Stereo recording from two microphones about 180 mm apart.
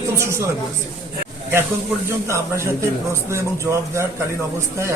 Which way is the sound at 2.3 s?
15° right (ahead or behind).